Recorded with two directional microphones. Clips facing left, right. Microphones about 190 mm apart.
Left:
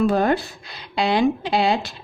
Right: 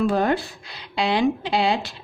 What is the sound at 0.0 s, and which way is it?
A woman's voice, 40° left (ahead or behind).